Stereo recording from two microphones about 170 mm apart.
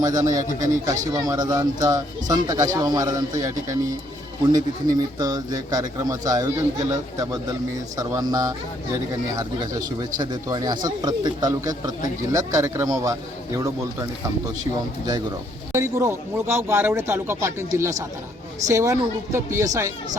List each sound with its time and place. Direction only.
0.0 s speech: 20° right (ahead or behind)
10.0 s speech: 25° right (ahead or behind)
15.7 s speech: 15° right (ahead or behind)